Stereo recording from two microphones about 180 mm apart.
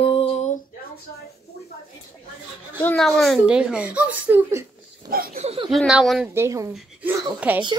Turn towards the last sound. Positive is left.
turn(degrees=-10)  # may be behind; listen again after turning